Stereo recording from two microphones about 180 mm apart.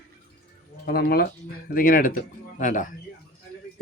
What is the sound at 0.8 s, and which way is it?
Speech, 60° left (ahead or behind).